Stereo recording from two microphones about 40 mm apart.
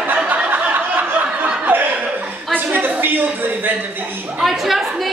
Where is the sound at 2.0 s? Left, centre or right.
Right.